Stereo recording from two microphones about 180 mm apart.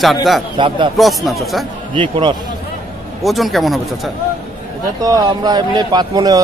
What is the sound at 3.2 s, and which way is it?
Speech, centre (ahead or behind).